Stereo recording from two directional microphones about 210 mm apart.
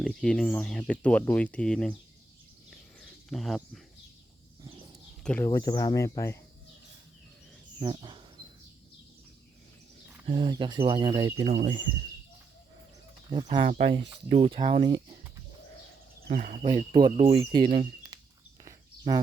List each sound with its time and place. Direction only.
0.0 s speech: 5° left (ahead or behind)
2.6 s a sound: centre (ahead or behind)
5.2 s speech: 5° left (ahead or behind)
5.5 s speech: 20° left (ahead or behind)
7.8 s bird: 20° right (ahead or behind)
10.2 s speech: 25° right (ahead or behind)
13.3 s speech: 20° right (ahead or behind)
16.2 s speech: 40° right (ahead or behind)
16.6 s speech: 25° right (ahead or behind)
17.7 s a sound: 20° right (ahead or behind)